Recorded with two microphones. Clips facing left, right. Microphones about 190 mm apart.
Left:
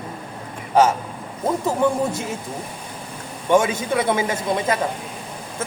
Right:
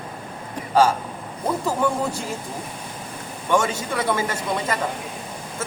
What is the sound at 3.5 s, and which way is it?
A man's voice, 20° left (ahead or behind).